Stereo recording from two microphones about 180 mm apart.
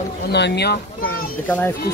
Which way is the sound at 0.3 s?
65° left (ahead or behind).